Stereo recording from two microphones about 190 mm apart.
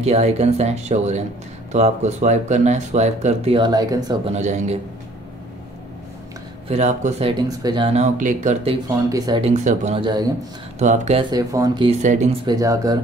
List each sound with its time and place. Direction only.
0.0 s speech: 35° right (ahead or behind)
4.3 s speech: 40° right (ahead or behind)
6.7 s speech: 40° right (ahead or behind)
8.6 s speech: 20° right (ahead or behind)
9.5 s speech: 35° right (ahead or behind)
11.2 s speech: 20° right (ahead or behind)
12.0 s speech: 40° right (ahead or behind)
12.4 s speech: 20° right (ahead or behind)